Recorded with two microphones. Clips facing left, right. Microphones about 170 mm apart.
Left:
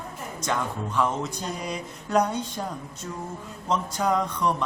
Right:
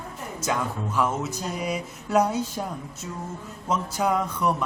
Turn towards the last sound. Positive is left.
turn(degrees=-5)  # may be behind; listen again after turning